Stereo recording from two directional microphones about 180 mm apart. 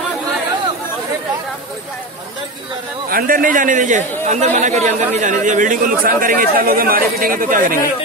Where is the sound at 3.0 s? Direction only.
50° right (ahead or behind).